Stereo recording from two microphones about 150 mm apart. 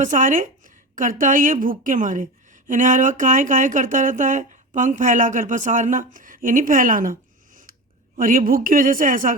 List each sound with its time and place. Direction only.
0.0 s a woman's voice: 60° right (ahead or behind)